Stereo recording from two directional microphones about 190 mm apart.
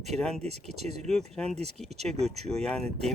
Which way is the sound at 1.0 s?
Centre (ahead or behind).